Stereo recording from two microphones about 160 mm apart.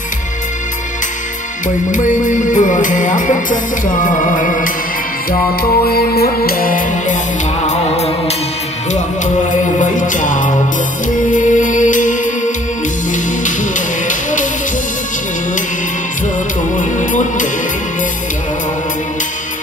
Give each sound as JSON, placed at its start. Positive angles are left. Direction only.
{"t": 1.9, "sound": "music", "side_deg": 50}
{"t": 5.3, "sound": "music", "side_deg": 70}
{"t": 7.6, "sound": "music", "side_deg": 40}
{"t": 16.7, "sound": "music", "side_deg": 55}